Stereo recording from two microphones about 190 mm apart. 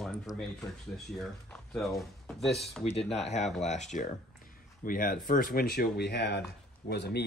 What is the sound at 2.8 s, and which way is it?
Speech, 30° left (ahead or behind).